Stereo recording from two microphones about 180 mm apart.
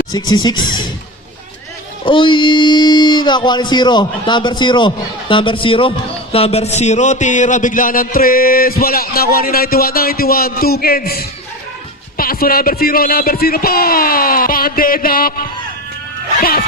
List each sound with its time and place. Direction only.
0.1 s speech: 20° left (ahead or behind)
2.0 s speech: 25° left (ahead or behind)
6.3 s a sound: 35° left (ahead or behind); by 15.4 s 55° left (ahead or behind)
16.4 s music: 55° left (ahead or behind)